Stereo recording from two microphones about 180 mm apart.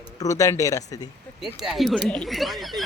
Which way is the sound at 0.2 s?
20° left (ahead or behind).